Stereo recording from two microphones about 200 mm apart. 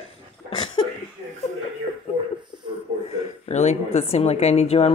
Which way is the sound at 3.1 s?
35° left (ahead or behind).